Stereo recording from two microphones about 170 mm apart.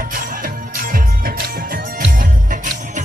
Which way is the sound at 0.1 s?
55° right (ahead or behind).